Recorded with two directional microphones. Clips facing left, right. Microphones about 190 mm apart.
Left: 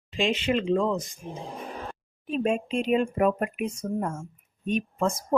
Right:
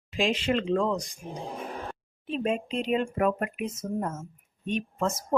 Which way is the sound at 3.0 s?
20° left (ahead or behind).